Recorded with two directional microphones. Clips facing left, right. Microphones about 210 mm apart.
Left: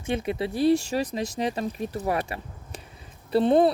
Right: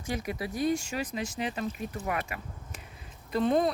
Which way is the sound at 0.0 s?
25° left (ahead or behind).